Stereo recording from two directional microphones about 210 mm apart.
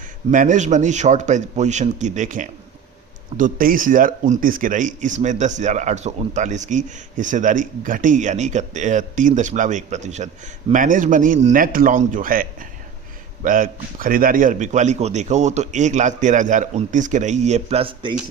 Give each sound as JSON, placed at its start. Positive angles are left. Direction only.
{"t": 0.3, "sound": "speech", "side_deg": -35}